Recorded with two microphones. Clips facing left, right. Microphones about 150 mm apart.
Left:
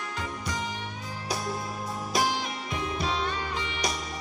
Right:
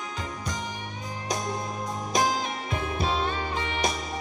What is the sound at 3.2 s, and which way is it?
Music, 30° right (ahead or behind).